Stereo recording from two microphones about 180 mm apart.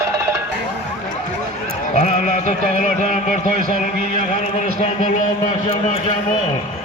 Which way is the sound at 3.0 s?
40° left (ahead or behind).